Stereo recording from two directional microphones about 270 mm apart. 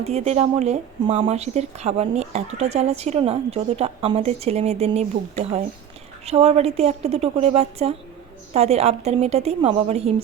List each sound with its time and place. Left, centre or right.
0.0 s speech: right